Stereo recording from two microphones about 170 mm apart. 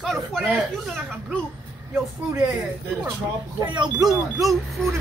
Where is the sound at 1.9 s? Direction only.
15° right (ahead or behind).